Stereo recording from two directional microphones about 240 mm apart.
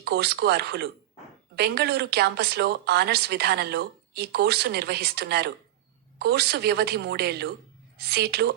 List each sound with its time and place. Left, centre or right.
0.0 s a woman's voice: right